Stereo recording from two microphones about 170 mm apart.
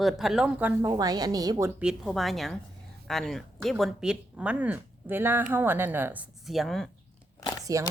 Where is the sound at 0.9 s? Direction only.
25° right (ahead or behind).